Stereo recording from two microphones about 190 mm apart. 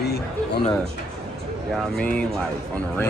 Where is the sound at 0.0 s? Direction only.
60° left (ahead or behind).